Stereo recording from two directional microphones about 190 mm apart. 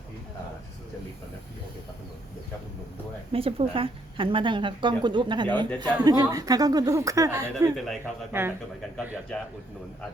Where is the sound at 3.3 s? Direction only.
30° right (ahead or behind); by 8.5 s 10° right (ahead or behind).